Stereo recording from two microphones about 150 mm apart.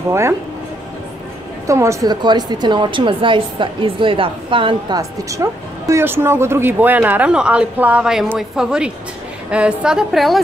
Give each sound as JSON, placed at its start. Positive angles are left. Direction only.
{"t": 1.7, "sound": "a woman's voice", "side_deg": -20}